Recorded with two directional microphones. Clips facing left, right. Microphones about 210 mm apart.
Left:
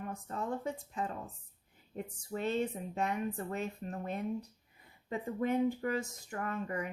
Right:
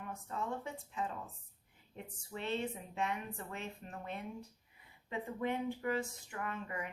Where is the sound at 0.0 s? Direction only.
40° left (ahead or behind).